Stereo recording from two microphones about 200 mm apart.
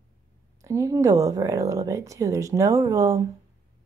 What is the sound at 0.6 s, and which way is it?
Speech, 15° right (ahead or behind).